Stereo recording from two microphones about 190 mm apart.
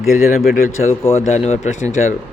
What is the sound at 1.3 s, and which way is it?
Speech, 35° left (ahead or behind).